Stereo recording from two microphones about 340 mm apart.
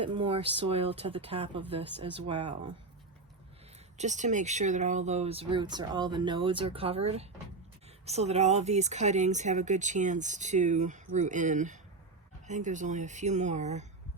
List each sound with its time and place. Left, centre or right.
0.0 s speech: centre
3.9 s speech: right